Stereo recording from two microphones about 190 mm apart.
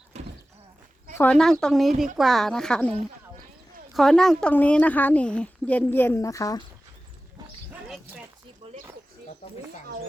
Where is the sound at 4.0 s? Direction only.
Centre (ahead or behind); by 6.6 s 15° left (ahead or behind).